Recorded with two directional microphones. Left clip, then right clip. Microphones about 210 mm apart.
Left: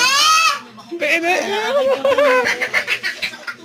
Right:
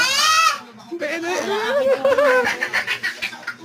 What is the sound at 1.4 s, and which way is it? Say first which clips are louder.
Speech: left 2 dB; 20° right (ahead or behind).